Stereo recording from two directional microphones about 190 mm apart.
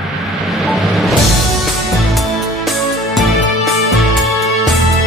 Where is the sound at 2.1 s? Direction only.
Centre (ahead or behind).